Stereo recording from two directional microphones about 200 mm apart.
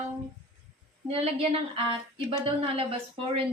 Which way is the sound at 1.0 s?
30° right (ahead or behind).